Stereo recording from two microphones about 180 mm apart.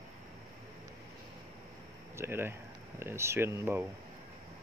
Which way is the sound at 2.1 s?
15° right (ahead or behind).